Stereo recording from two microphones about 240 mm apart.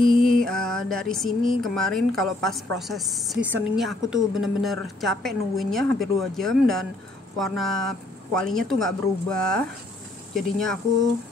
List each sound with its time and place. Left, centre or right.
0.4 s music: centre
1.6 s a woman's voice: centre